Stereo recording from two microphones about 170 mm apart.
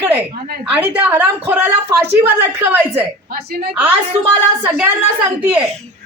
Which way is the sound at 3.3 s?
65° right (ahead or behind).